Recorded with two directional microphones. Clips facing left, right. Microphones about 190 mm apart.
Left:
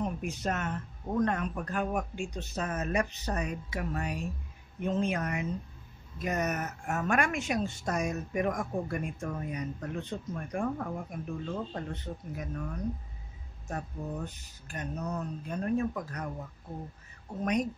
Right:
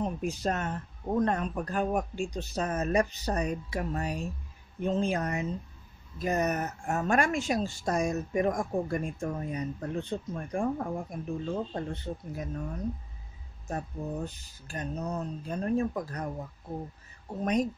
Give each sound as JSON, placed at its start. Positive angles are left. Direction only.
{"t": 0.0, "sound": "speech", "side_deg": -30}
{"t": 13.7, "sound": "speech", "side_deg": -30}